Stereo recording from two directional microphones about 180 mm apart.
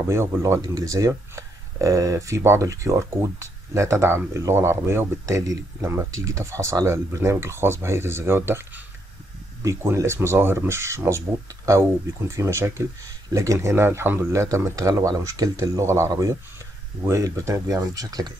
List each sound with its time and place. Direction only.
0.0 s speech: 15° right (ahead or behind)